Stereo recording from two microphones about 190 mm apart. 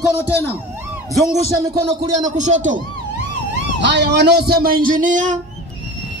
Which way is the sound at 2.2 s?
40° right (ahead or behind).